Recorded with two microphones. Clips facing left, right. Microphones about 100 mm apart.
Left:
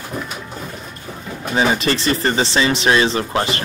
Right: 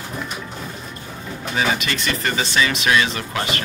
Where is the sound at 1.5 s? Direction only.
30° left (ahead or behind).